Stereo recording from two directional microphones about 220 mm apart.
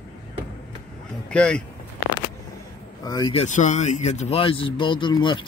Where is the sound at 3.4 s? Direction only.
35° left (ahead or behind).